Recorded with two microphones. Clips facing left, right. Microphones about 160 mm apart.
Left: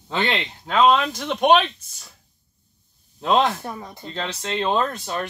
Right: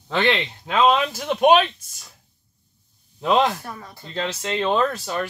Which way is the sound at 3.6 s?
20° left (ahead or behind).